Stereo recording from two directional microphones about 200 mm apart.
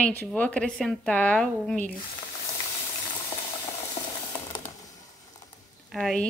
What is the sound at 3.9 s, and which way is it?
Sizzle, 20° left (ahead or behind).